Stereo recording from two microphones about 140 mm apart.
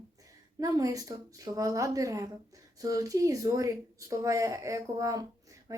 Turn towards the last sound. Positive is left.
turn(degrees=-25)  # may be behind; listen again after turning